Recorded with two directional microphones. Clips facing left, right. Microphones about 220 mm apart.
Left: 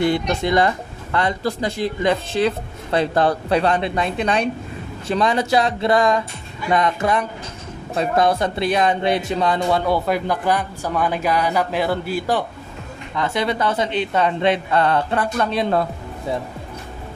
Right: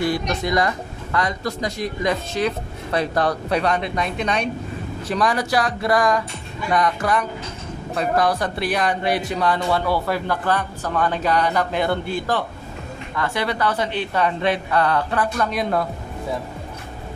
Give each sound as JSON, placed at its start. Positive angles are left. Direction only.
{"t": 0.0, "sound": "speech", "side_deg": 25}
{"t": 13.1, "sound": "speech", "side_deg": 20}